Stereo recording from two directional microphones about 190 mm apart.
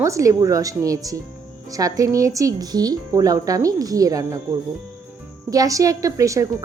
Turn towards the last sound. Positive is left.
turn(degrees=-15)  # may be behind; listen again after turning